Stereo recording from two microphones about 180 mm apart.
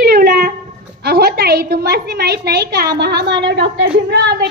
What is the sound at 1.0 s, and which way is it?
A woman's voice, 60° right (ahead or behind).